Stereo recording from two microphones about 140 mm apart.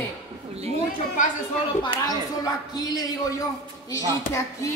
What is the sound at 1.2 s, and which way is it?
Speech, 65° left (ahead or behind).